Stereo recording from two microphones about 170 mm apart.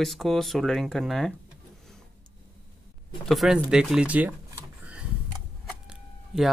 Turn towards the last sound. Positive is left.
turn(degrees=0)  # may be behind; listen again after turning